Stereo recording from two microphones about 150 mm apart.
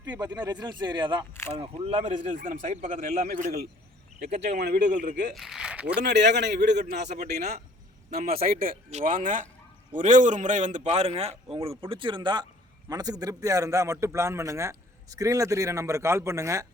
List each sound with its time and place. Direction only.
0.0 s a man's voice: 25° right (ahead or behind); by 3.3 s 65° right (ahead or behind)
3.4 s speech: 90° right
4.9 s a man's voice: 55° right (ahead or behind)
5.3 s speech: centre (ahead or behind)
6.5 s a man's voice: 55° right (ahead or behind)
8.1 s a man's voice: 80° right
8.9 s a man's voice: 55° right (ahead or behind); by 16.6 s 20° right (ahead or behind)